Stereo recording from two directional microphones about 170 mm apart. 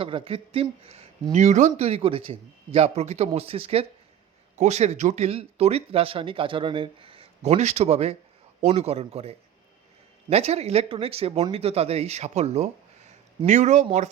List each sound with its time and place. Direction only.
0.0 s speech: 30° right (ahead or behind)